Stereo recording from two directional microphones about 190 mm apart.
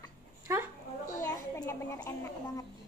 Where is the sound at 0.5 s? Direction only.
15° right (ahead or behind).